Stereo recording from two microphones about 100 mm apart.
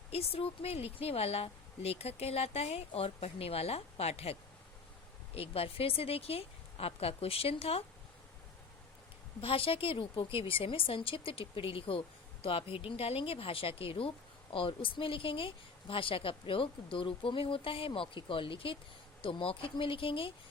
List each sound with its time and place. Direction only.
0.1 s speech: 80° left
5.3 s a woman's voice: 75° left (ahead or behind)
9.4 s a woman's voice: 65° left (ahead or behind)